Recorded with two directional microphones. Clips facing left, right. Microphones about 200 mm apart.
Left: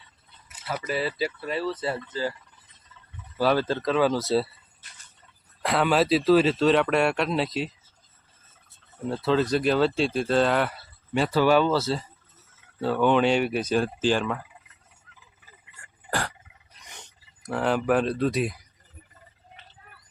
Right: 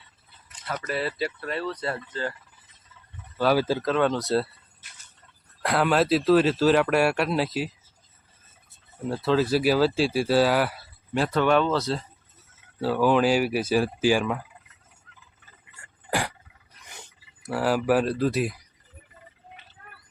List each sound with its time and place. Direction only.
0.0 s speech: 5° left (ahead or behind)
3.5 s speech: 5° right (ahead or behind)
9.0 s speech: 5° right (ahead or behind)
16.0 s a sound: 15° right (ahead or behind)
17.0 s speech: 5° right (ahead or behind)
19.8 s a sound: 60° right (ahead or behind)